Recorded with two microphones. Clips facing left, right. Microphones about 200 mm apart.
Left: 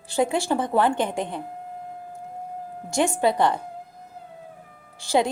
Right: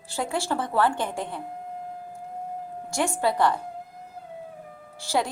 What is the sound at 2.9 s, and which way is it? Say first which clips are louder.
Speech: left 4 dB; 20° left (ahead or behind).